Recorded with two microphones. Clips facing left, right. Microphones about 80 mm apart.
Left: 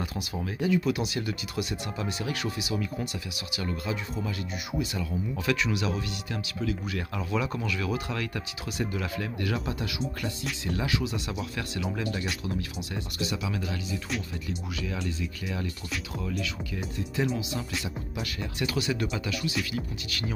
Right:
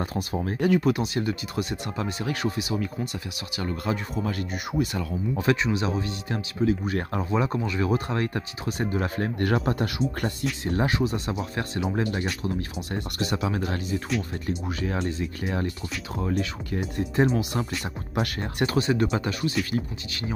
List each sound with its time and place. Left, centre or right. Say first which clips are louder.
0.0 s speech: right 5 dB; right
0.6 s speech: right 4 dB; right
5.3 s speech: right 5 dB; right
20.1 s speech: right 2 dB; right